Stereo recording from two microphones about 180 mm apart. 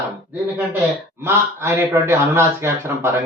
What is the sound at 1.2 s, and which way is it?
Speech, 15° right (ahead or behind).